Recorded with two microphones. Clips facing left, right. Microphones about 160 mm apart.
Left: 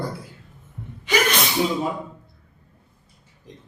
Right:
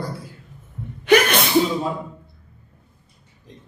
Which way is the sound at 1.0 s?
60° right (ahead or behind).